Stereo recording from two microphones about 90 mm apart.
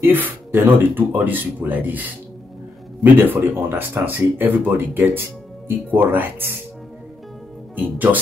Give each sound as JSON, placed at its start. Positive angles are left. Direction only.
{"t": 0.0, "sound": "speech", "side_deg": -20}
{"t": 7.7, "sound": "speech", "side_deg": -20}